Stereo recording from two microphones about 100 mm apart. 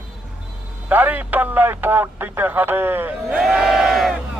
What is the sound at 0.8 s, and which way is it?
Speech, 15° right (ahead or behind).